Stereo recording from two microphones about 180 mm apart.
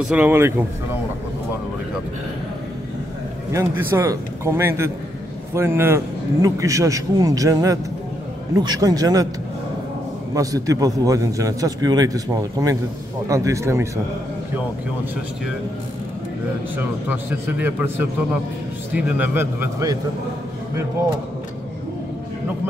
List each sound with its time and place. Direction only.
0.0 s a man's voice: 10° right (ahead or behind)
3.5 s a man's voice: 15° right (ahead or behind)
10.3 s a man's voice: 20° right (ahead or behind)
16.7 s a man's voice: 10° right (ahead or behind)